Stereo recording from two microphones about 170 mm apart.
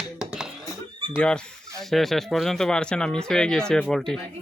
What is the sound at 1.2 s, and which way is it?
Speech, 5° left (ahead or behind).